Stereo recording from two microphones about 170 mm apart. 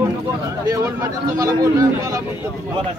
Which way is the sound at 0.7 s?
20° right (ahead or behind).